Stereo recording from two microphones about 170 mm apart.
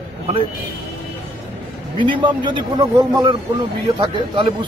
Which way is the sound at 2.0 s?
30° right (ahead or behind).